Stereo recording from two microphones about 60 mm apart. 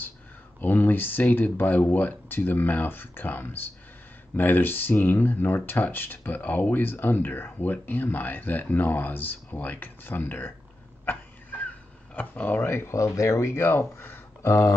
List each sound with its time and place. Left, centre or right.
0.6 s speech: left
12.2 s speech: left
12.6 s speech: left
12.9 s speech: left